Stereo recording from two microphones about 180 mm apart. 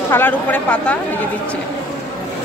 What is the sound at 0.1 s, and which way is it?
Speech, 10° left (ahead or behind).